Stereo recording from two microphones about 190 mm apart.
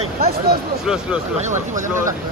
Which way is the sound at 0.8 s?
5° right (ahead or behind).